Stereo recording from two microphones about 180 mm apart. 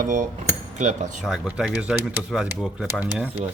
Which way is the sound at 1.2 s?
5° right (ahead or behind).